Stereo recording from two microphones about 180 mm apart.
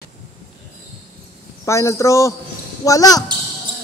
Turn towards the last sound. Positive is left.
turn(degrees=20)  # may be behind; listen again after turning